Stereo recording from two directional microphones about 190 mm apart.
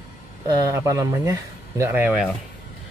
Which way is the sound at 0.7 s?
15° right (ahead or behind).